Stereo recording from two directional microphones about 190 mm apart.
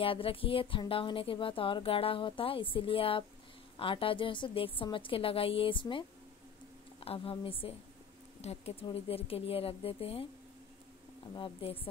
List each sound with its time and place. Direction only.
0.0 s speech: 30° left (ahead or behind)
11.3 s speech: 30° left (ahead or behind)